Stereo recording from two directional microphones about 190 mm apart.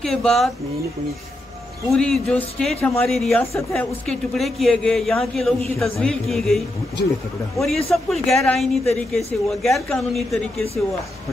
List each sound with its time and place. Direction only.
0.0 s a man's voice: centre (ahead or behind)
1.9 s a man's voice: 5° left (ahead or behind)